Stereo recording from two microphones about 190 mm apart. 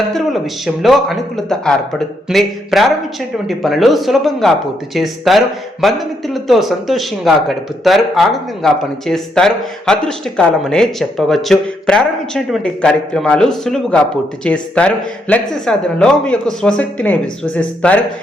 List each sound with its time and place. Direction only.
0.1 s speech: centre (ahead or behind)